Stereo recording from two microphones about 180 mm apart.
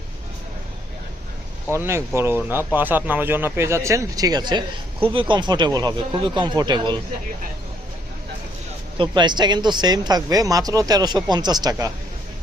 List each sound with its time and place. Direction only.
1.7 s speech: 15° right (ahead or behind)
9.0 s speech: 25° right (ahead or behind)